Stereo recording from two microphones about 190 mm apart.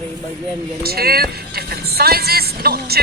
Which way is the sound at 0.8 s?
55° right (ahead or behind).